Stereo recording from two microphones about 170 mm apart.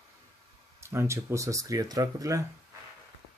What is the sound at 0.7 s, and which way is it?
Speech, 15° right (ahead or behind).